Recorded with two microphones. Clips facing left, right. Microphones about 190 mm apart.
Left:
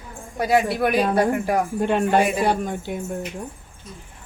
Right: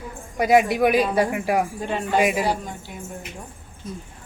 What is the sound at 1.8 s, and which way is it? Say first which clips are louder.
Speech: left 5 dB; 60° left (ahead or behind).